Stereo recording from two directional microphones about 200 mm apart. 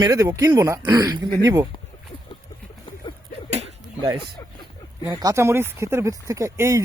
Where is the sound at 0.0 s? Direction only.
20° right (ahead or behind).